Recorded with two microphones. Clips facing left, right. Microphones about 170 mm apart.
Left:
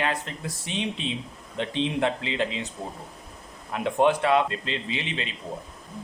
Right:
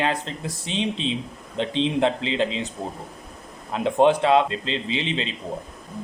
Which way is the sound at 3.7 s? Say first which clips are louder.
Right 4 dB; 25° right (ahead or behind).